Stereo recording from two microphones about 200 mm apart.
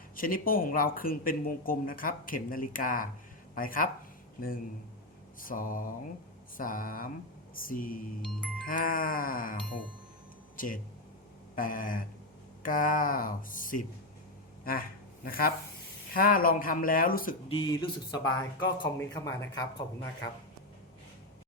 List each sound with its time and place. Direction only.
0.2 s speech: 45° left (ahead or behind)
10.6 s speech: 45° left (ahead or behind)
17.5 s speech: 25° left (ahead or behind)